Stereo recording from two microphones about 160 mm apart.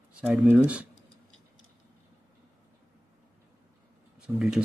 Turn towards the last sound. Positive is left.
turn(degrees=-5)  # may be behind; listen again after turning